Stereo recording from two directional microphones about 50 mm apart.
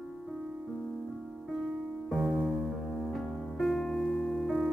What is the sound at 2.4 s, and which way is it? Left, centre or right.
Music, centre.